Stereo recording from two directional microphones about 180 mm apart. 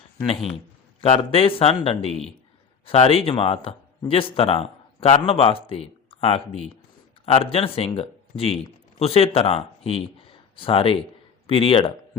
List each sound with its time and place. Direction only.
1.0 s speech: 30° left (ahead or behind)